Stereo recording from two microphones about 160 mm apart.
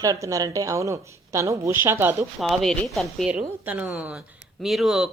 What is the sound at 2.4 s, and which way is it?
Speech, centre (ahead or behind).